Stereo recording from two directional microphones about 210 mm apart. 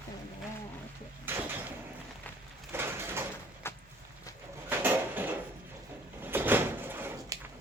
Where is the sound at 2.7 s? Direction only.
10° right (ahead or behind).